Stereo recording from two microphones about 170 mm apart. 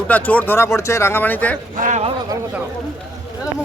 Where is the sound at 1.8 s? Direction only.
45° right (ahead or behind).